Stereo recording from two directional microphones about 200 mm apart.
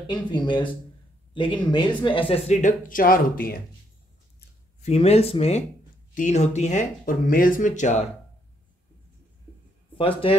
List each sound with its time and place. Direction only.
0.0 s speech: 25° left (ahead or behind); by 3.6 s 45° left (ahead or behind)
4.8 s speech: 30° left (ahead or behind)
9.9 s speech: 25° left (ahead or behind)